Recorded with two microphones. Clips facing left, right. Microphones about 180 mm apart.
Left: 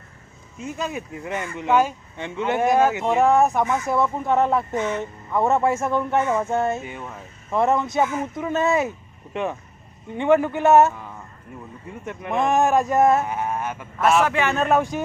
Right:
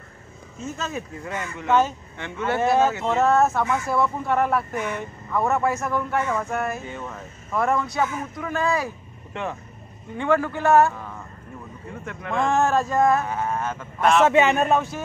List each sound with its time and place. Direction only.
0.6 s speech: 15° left (ahead or behind)
1.7 s speech: 10° left (ahead or behind)
6.8 s speech: 15° left (ahead or behind)
12.0 s speech: 20° left (ahead or behind)
14.2 s speech: 20° right (ahead or behind)
14.7 s speech: 15° left (ahead or behind)